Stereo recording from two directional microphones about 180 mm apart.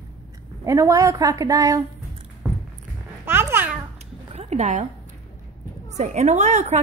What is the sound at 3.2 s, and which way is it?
Babbling, 10° right (ahead or behind).